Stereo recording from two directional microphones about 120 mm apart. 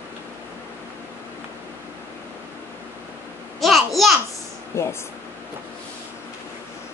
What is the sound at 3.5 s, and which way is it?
Babbling, centre (ahead or behind).